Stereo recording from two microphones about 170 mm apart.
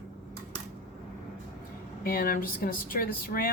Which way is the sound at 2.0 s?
60° left (ahead or behind).